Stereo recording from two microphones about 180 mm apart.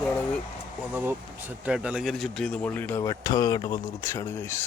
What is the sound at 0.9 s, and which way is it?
Speech, 10° right (ahead or behind).